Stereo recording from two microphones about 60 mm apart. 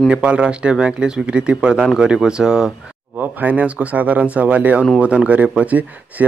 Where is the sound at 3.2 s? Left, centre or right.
Right.